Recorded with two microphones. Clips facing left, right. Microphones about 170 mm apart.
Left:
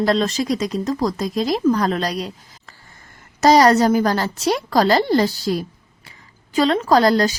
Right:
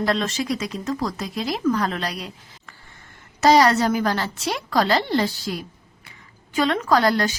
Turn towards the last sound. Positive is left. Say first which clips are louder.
# left 4 dB
turn(degrees=35)  # may be behind; listen again after turning